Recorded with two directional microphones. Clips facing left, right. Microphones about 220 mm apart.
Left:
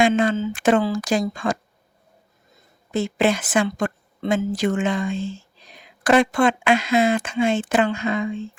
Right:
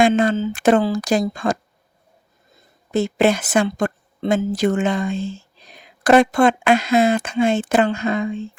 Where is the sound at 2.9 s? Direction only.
40° right (ahead or behind).